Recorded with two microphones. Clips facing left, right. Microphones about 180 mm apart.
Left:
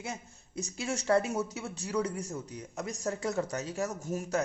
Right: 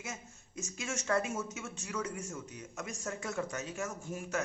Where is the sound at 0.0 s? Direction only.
35° left (ahead or behind).